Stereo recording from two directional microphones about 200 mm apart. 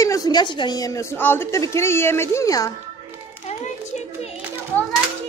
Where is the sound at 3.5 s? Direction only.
30° left (ahead or behind).